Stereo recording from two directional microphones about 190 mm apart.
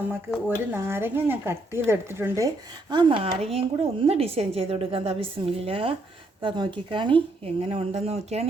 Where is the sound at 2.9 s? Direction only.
25° right (ahead or behind).